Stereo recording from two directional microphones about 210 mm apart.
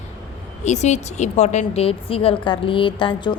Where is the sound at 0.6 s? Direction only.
35° left (ahead or behind).